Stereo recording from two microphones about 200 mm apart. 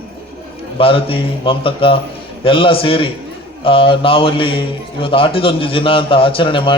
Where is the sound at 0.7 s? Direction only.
30° left (ahead or behind).